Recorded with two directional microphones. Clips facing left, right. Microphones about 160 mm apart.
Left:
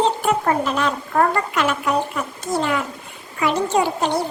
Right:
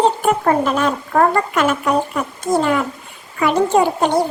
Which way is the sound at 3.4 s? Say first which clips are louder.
Right 4 dB; 50° right (ahead or behind).